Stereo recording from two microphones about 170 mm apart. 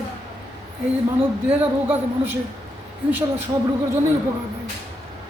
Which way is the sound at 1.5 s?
10° right (ahead or behind).